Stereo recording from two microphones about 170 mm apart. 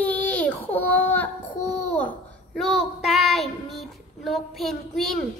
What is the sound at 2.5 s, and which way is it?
Child singing, centre (ahead or behind).